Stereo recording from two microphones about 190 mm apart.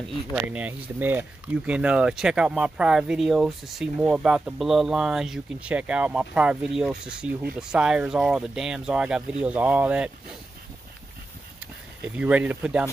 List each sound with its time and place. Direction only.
0.3 s speech: 5° right (ahead or behind)
12.2 s speech: 10° right (ahead or behind)